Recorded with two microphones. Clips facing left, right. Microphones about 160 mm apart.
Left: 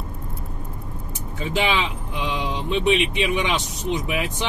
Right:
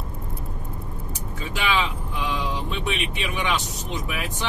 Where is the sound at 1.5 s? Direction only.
25° left (ahead or behind).